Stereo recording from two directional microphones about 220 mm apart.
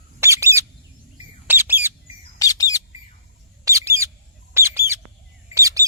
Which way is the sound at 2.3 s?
15° left (ahead or behind).